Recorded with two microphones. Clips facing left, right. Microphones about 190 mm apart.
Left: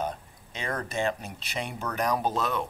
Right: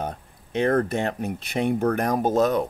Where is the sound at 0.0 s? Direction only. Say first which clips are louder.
Right 1 dB; 60° right (ahead or behind).